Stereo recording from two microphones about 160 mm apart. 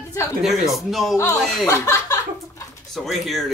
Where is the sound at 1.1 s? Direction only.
20° left (ahead or behind).